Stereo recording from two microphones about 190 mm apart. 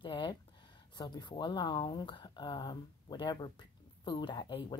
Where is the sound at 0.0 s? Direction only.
25° left (ahead or behind).